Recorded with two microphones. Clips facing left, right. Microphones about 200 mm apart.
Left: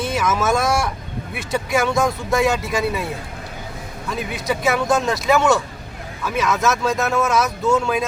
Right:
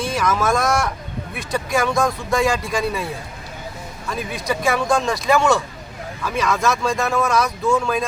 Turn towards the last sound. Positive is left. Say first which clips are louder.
# left 1 dB
turn(degrees=5)  # may be behind; listen again after turning